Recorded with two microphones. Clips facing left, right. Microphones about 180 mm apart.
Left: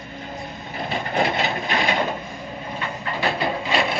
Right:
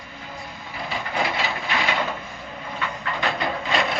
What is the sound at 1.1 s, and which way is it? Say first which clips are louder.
Vehicle: left 4 dB; 50° left (ahead or behind).